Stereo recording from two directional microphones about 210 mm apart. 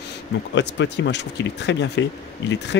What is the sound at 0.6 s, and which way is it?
Speech, 55° left (ahead or behind).